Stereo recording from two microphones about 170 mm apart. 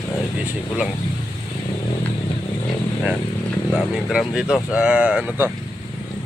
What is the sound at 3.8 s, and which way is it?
Speech, centre (ahead or behind).